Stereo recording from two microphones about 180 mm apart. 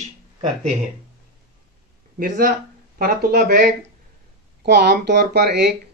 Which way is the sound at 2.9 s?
55° right (ahead or behind).